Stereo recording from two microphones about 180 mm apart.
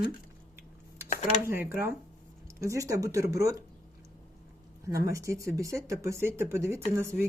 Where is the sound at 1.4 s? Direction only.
10° right (ahead or behind).